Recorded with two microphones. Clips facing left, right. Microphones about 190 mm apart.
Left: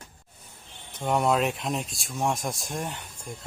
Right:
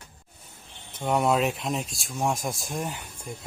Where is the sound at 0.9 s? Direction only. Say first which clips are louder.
Right 1 dB; centre (ahead or behind).